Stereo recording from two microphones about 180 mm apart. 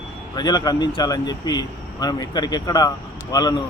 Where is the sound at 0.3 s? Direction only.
20° left (ahead or behind).